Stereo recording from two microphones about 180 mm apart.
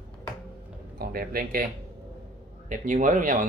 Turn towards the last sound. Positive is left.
turn(degrees=-45)  # may be behind; listen again after turning